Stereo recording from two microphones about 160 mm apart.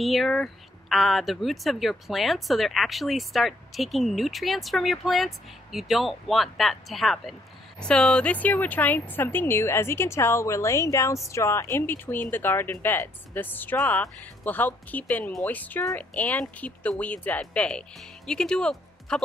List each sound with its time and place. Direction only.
0.0 s speech: centre (ahead or behind)